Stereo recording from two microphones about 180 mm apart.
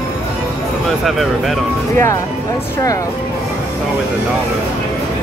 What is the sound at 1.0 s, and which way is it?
Speech, centre (ahead or behind).